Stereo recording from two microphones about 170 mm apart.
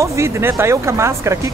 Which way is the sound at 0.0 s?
15° right (ahead or behind).